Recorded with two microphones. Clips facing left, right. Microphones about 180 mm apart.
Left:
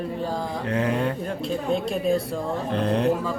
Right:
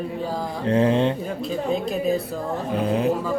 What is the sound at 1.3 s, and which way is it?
Speech, 5° right (ahead or behind).